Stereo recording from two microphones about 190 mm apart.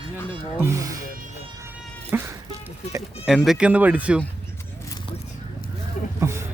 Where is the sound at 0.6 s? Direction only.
15° right (ahead or behind).